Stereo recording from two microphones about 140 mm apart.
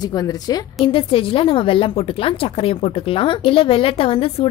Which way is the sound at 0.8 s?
40° left (ahead or behind).